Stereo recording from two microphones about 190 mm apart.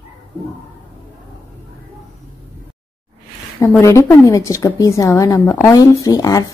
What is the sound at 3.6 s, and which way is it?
A woman's voice, 15° left (ahead or behind).